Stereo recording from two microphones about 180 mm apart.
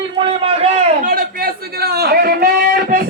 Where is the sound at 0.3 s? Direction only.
35° right (ahead or behind).